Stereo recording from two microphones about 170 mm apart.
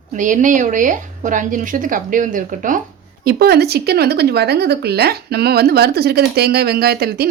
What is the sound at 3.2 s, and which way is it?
Speech, 65° right (ahead or behind).